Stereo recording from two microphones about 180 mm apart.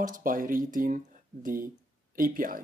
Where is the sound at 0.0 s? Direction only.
50° right (ahead or behind).